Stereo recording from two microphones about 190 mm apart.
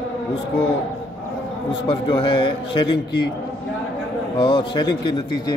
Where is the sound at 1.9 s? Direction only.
25° left (ahead or behind).